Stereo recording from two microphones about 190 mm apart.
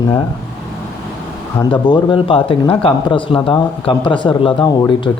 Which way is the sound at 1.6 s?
25° left (ahead or behind).